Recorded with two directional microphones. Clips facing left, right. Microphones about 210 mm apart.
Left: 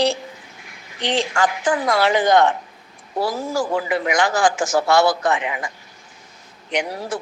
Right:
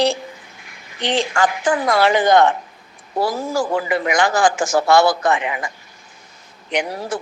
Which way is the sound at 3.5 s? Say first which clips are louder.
Right 1 dB; 55° right (ahead or behind).